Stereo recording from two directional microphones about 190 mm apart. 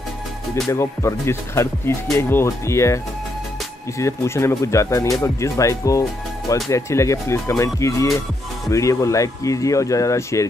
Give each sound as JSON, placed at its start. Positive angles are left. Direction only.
{"t": 0.7, "sound": "speech", "side_deg": 15}
{"t": 4.0, "sound": "speech", "side_deg": 15}